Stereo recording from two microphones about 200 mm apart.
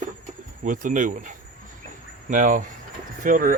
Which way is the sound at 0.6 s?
40° right (ahead or behind).